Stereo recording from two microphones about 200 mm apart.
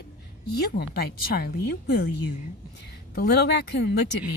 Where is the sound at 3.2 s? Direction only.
55° left (ahead or behind).